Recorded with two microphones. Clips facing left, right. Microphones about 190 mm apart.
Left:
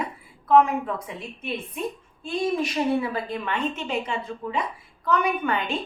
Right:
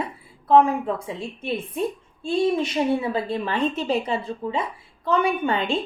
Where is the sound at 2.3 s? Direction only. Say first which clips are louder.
Right 4 dB; 25° right (ahead or behind).